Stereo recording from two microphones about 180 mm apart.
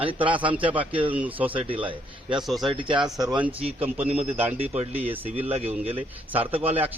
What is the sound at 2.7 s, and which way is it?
Speech, 25° right (ahead or behind).